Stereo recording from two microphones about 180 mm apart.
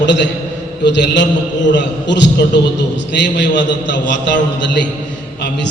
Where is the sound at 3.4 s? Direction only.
80° left.